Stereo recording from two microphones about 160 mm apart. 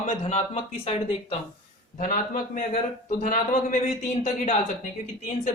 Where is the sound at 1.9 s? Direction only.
55° left (ahead or behind).